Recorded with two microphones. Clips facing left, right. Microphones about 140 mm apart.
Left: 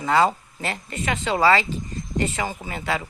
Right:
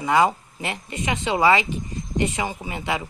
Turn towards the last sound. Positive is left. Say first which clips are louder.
# even
turn(degrees=-20)  # may be behind; listen again after turning